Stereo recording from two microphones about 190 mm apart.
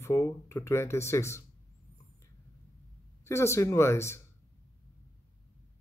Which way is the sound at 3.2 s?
15° left (ahead or behind).